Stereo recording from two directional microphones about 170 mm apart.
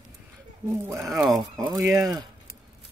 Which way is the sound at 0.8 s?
15° right (ahead or behind).